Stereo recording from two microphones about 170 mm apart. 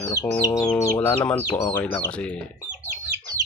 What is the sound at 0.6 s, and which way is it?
Speech, 10° left (ahead or behind).